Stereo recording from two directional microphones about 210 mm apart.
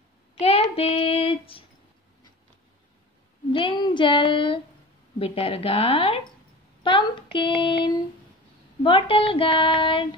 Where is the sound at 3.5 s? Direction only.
25° left (ahead or behind).